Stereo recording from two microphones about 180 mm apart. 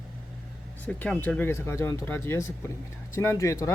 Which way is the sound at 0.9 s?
5° left (ahead or behind).